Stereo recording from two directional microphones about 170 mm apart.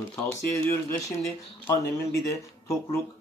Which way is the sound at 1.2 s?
20° left (ahead or behind).